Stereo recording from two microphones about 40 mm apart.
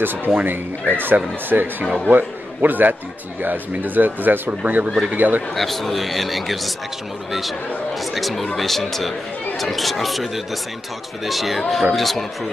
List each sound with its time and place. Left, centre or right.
0.0 s a man's voice: right
4.8 s speech: centre
5.1 s speech: right
5.5 s a man's voice: centre
8.0 s a man's voice: centre